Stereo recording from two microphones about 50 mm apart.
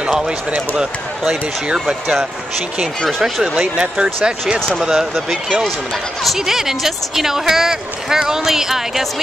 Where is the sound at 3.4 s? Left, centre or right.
Centre.